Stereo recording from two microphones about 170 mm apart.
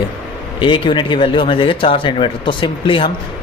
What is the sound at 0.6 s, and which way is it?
Speech, 30° left (ahead or behind).